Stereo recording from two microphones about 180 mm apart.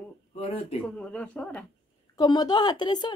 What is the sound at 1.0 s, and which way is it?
Speech, 5° left (ahead or behind).